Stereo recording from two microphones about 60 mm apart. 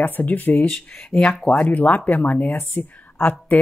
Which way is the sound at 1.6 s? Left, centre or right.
Left.